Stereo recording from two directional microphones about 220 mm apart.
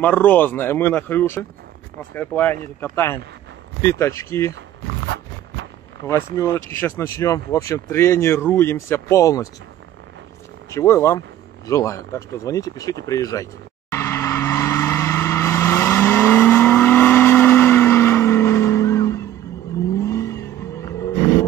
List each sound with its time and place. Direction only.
0.0 s speech: 10° left (ahead or behind)
5.0 s a sound: 55° right (ahead or behind)
6.0 s speech: 15° left (ahead or behind)
10.7 s speech: 10° left (ahead or behind)
13.0 s vehicle: 15° left (ahead or behind)